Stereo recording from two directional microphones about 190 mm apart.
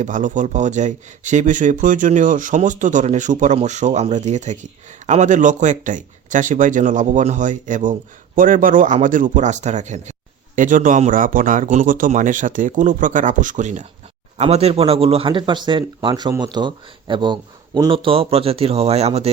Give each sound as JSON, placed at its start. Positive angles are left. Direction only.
{"t": 0.0, "sound": "speech", "side_deg": -40}